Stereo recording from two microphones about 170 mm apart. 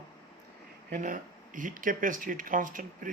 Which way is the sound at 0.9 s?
50° right (ahead or behind).